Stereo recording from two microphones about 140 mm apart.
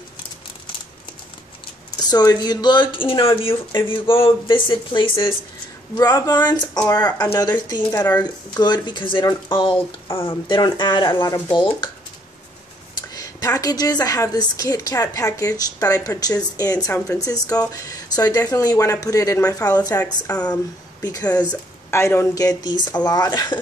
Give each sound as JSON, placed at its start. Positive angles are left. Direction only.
{"t": 2.0, "sound": "speech", "side_deg": 30}
{"t": 5.9, "sound": "a woman's voice", "side_deg": 25}
{"t": 11.2, "sound": "speech", "side_deg": 15}
{"t": 11.5, "sound": "speech", "side_deg": 35}
{"t": 12.9, "sound": "a woman's voice", "side_deg": 25}